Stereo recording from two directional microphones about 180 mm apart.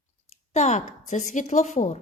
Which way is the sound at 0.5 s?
40° left (ahead or behind).